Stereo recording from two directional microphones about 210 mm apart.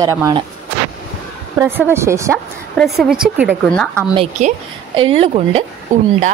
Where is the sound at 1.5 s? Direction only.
10° right (ahead or behind).